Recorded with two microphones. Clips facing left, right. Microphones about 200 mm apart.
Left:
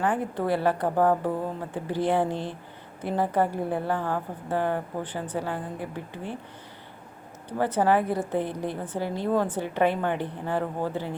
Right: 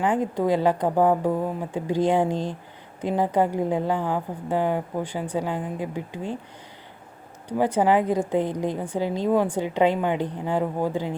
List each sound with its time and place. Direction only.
0.0 s a woman's voice: 15° right (ahead or behind)
7.5 s a woman's voice: 15° right (ahead or behind)